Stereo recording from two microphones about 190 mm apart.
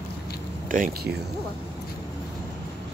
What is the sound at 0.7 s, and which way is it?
Speech, 45° right (ahead or behind).